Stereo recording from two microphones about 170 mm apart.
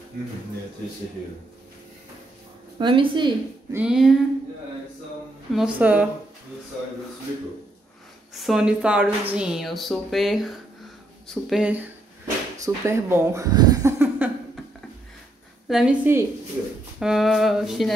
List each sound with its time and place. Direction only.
2.8 s a woman's voice: 30° right (ahead or behind)
3.7 s speech: 5° right (ahead or behind)
5.5 s speech: 5° right (ahead or behind)
8.4 s speech: centre (ahead or behind)
12.6 s speech: 15° right (ahead or behind)
15.7 s speech: 5° right (ahead or behind)
17.0 s speech: centre (ahead or behind)